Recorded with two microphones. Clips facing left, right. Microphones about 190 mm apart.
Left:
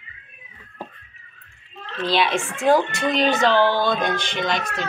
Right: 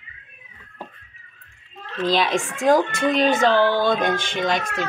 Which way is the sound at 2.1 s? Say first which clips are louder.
Even; 40° right (ahead or behind).